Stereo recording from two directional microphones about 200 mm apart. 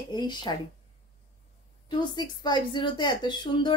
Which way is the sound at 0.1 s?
20° left (ahead or behind).